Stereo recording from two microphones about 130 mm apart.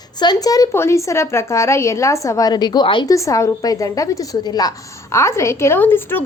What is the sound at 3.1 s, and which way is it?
A woman's voice, 25° left (ahead or behind).